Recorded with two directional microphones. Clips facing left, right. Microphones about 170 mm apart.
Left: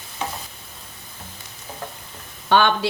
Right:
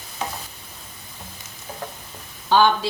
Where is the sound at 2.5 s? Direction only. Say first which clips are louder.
Even; 65° left (ahead or behind).